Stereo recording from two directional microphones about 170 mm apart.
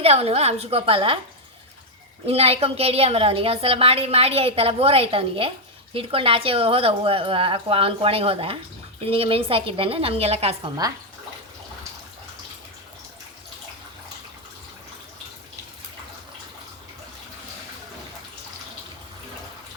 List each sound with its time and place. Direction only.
0.0 s a woman's voice: 35° right (ahead or behind)
2.2 s a woman's voice: 35° right (ahead or behind)